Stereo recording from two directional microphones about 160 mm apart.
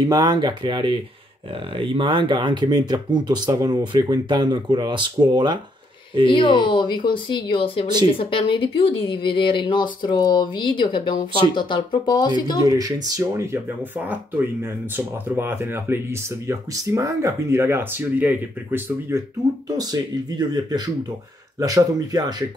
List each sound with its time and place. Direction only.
0.1 s speech: 25° right (ahead or behind)
6.2 s speech: 30° left (ahead or behind)
12.6 s speech: 25° right (ahead or behind)